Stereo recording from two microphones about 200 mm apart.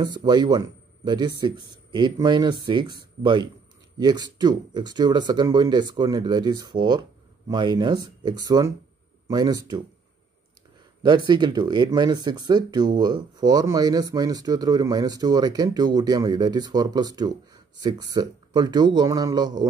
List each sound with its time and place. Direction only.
0.0 s speech: 20° right (ahead or behind)
11.0 s speech: 20° right (ahead or behind)